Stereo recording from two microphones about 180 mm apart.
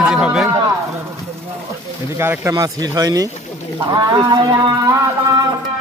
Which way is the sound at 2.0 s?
15° right (ahead or behind).